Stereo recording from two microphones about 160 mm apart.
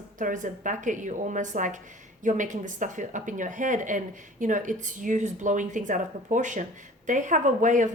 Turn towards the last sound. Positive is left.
turn(degrees=-50)  # may be behind; listen again after turning